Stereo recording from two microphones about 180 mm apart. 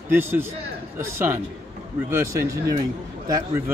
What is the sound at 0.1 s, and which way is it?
Speech, 10° right (ahead or behind).